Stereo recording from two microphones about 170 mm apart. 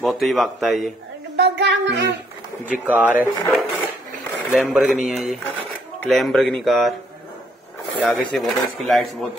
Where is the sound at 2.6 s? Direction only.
10° right (ahead or behind).